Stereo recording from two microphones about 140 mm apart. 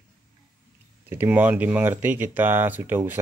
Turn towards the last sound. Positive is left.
turn(degrees=-15)  # may be behind; listen again after turning